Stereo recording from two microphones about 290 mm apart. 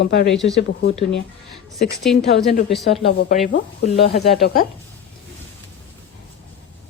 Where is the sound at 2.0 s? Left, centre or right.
Centre.